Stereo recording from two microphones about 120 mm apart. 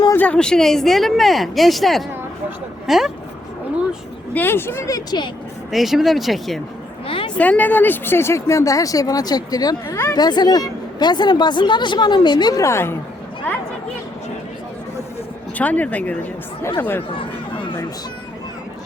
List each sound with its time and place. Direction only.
0.1 s speech: 10° left (ahead or behind)
4.4 s speech: 20° left (ahead or behind); by 5.3 s 35° left (ahead or behind)
5.7 s speech: centre (ahead or behind)
7.3 s speech: 10° left (ahead or behind)
15.5 s speech: 15° left (ahead or behind)
17.2 s chatter: 45° left (ahead or behind)